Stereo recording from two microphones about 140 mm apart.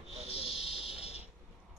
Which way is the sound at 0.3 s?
45° left (ahead or behind).